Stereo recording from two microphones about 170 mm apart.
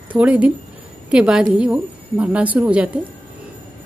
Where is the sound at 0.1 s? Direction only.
10° right (ahead or behind).